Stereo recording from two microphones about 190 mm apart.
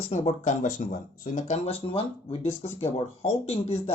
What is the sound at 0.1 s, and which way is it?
Speech, 40° left (ahead or behind).